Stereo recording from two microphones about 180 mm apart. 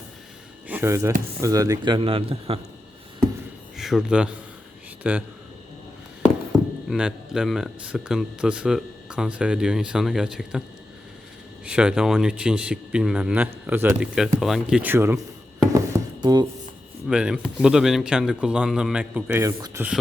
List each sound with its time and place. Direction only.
0.7 s a man's voice: 15° right (ahead or behind); by 2.6 s 35° right (ahead or behind)
3.8 s a man's voice: centre (ahead or behind)
6.9 s speech: 5° right (ahead or behind)
11.6 s speech: 5° right (ahead or behind)
16.2 s speech: 25° right (ahead or behind)
17.1 s speech: 5° right (ahead or behind)